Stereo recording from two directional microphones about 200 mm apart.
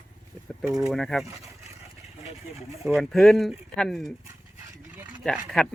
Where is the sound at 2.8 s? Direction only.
Centre (ahead or behind).